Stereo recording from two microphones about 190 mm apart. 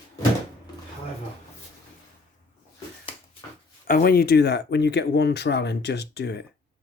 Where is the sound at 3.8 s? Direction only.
50° left (ahead or behind).